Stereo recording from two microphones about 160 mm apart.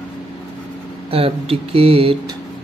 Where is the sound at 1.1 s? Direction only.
35° right (ahead or behind).